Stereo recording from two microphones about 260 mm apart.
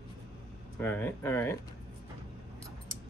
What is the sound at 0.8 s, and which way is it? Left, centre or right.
Speech, centre.